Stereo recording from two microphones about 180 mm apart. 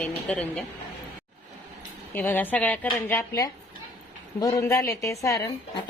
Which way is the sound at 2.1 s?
10° left (ahead or behind).